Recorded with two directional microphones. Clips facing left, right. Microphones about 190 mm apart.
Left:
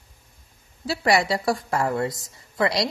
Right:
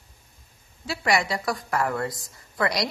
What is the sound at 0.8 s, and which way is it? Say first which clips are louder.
A woman's voice: left 3 dB; 35° left (ahead or behind).